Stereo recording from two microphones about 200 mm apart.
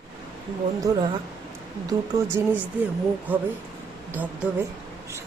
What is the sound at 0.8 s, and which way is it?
A woman's voice, 20° right (ahead or behind).